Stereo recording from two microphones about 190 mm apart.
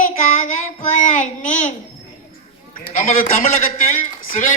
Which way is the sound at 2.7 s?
40° left (ahead or behind).